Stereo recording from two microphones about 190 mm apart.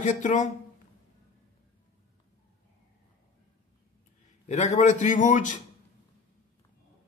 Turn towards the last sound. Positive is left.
turn(degrees=40)  # may be behind; listen again after turning